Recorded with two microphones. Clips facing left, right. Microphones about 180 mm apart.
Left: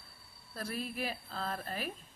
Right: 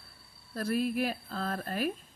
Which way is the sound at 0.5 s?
45° right (ahead or behind).